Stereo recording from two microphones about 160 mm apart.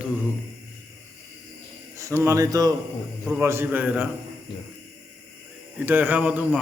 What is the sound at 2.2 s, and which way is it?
A man's voice, 20° right (ahead or behind).